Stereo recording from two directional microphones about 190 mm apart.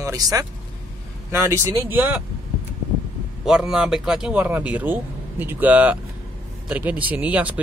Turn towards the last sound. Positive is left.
turn(degrees=-10)  # may be behind; listen again after turning